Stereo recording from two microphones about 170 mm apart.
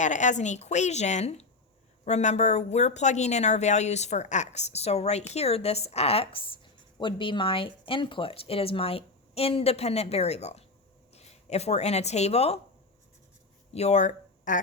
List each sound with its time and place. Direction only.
0.0 s a woman's voice: 45° left (ahead or behind)
13.7 s speech: 40° left (ahead or behind)